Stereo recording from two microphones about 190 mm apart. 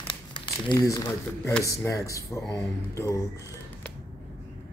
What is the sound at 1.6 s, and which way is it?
Speech, 15° left (ahead or behind).